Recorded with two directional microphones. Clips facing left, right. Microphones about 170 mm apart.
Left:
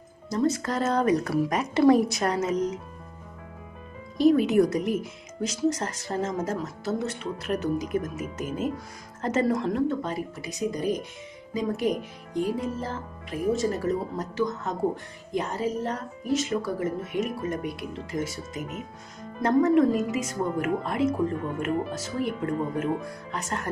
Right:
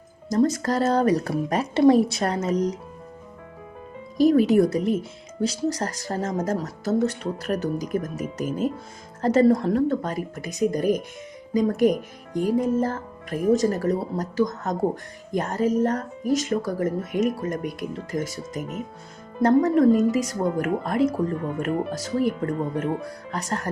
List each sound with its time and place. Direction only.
0.3 s speech: 40° right (ahead or behind)
4.2 s speech: 40° right (ahead or behind)